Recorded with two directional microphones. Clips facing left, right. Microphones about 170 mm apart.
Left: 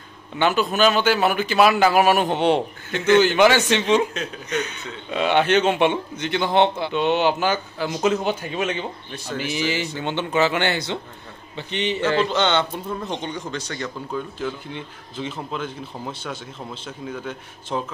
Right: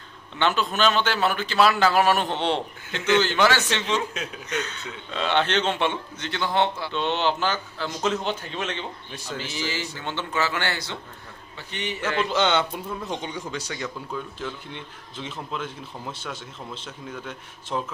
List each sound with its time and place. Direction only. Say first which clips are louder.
0.4 s a man's voice: left 4 dB; 10° left (ahead or behind); by 12.3 s 30° left (ahead or behind)
12.3 s speech: left 2 dB; 5° right (ahead or behind)